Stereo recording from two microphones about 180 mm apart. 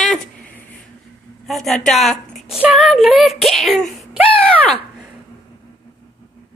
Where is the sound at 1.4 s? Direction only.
Centre (ahead or behind).